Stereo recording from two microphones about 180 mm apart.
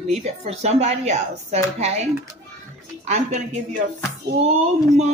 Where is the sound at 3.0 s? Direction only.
40° right (ahead or behind).